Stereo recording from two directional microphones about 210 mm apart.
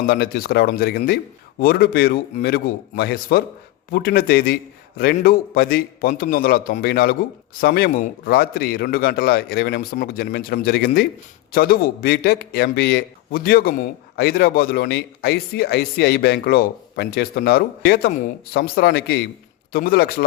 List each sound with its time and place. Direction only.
0.0 s a man's voice: 45° left (ahead or behind)